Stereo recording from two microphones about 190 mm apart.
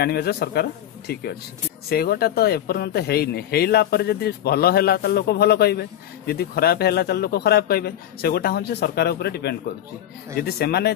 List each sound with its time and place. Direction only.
0.0 s speech: 55° left (ahead or behind)